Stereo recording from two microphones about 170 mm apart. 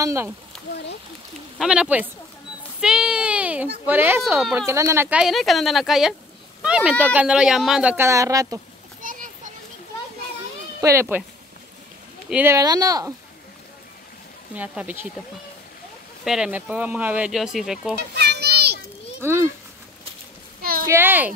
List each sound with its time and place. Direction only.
0.0 s speech: 15° right (ahead or behind)
1.6 s speech: 5° right (ahead or behind)
2.8 s a sound: 5° right (ahead or behind)
3.8 s speech: 10° right (ahead or behind)
5.2 s speech: centre (ahead or behind); by 8.5 s 20° right (ahead or behind)
9.0 s a sound: 50° right (ahead or behind)
10.8 s speech: 15° right (ahead or behind)
12.3 s speech: 10° right (ahead or behind)
12.5 s speech: 20° right (ahead or behind)
14.5 s speech: 10° right (ahead or behind)
16.3 s speech: 5° right (ahead or behind)
18.1 s children playing: 75° right (ahead or behind)
19.2 s speech: 15° right (ahead or behind)
20.8 s speech: 15° right (ahead or behind)